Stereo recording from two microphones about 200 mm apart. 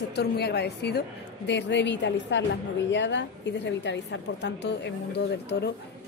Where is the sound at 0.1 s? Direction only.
55° left (ahead or behind).